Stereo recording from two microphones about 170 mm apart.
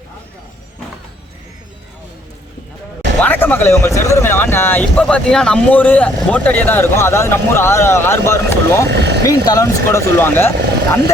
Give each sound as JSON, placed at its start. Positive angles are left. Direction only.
{"t": 3.2, "sound": "speech", "side_deg": 10}
{"t": 8.9, "sound": "speech", "side_deg": -80}
{"t": 9.2, "sound": "speech", "side_deg": 20}